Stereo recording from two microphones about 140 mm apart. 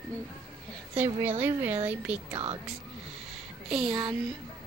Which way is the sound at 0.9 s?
15° right (ahead or behind).